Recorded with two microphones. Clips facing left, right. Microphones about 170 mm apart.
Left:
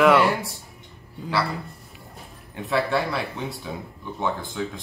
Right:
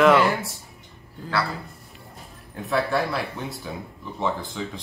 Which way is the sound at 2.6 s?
Centre (ahead or behind).